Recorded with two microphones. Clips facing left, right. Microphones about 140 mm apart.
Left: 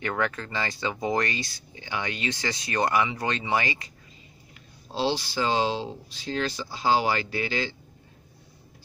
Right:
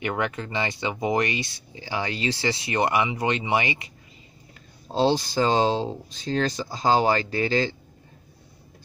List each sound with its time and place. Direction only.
0.0 s speech: 20° right (ahead or behind)
4.9 s speech: 45° right (ahead or behind)